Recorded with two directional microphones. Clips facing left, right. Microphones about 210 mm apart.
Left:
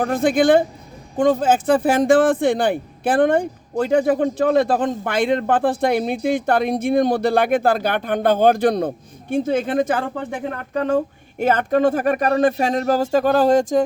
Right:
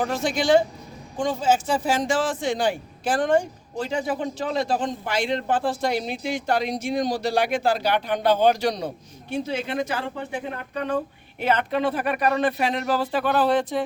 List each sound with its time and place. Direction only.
0.0 s a man's voice: 55° left (ahead or behind)